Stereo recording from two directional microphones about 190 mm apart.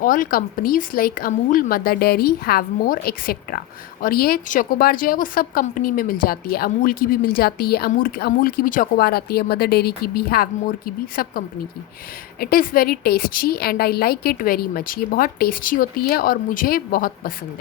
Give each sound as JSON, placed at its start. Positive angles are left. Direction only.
{"t": 0.0, "sound": "a woman's voice", "side_deg": 45}